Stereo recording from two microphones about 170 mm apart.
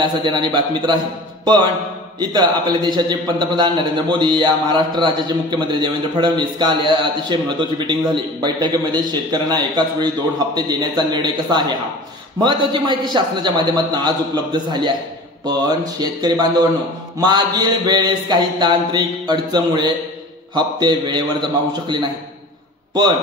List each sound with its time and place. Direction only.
0.0 s a man's voice: 25° right (ahead or behind)